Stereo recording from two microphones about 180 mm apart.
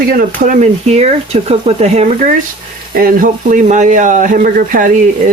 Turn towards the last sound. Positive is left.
turn(degrees=-50)  # may be behind; listen again after turning